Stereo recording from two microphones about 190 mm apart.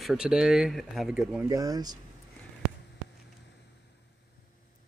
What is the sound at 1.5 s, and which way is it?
Speech, 20° right (ahead or behind).